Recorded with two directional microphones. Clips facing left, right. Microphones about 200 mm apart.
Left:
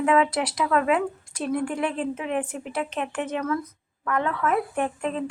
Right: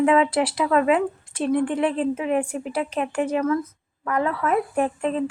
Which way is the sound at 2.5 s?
35° right (ahead or behind).